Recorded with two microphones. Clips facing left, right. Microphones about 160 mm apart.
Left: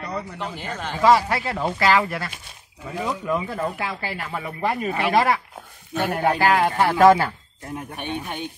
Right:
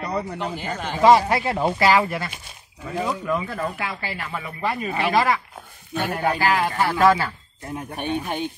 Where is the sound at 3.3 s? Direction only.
15° left (ahead or behind).